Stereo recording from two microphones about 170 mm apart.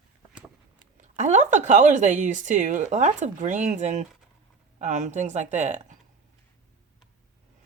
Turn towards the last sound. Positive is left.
turn(degrees=-45)  # may be behind; listen again after turning